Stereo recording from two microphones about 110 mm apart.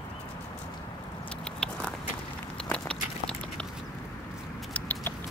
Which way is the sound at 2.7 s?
10° left (ahead or behind).